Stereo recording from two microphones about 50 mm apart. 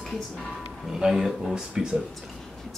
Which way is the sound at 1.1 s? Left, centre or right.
Centre.